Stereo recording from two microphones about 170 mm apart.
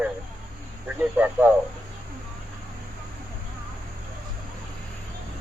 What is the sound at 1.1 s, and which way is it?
Speech, 10° right (ahead or behind).